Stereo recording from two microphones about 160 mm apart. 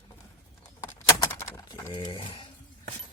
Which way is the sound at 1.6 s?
25° left (ahead or behind).